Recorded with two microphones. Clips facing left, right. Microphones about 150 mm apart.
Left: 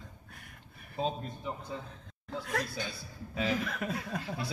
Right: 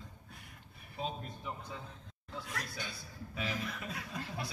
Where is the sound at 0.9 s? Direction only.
35° left (ahead or behind).